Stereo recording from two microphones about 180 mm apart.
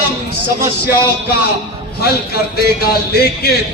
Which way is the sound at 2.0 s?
60° left (ahead or behind).